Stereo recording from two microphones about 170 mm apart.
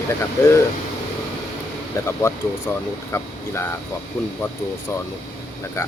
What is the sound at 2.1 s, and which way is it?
Speech, 15° left (ahead or behind).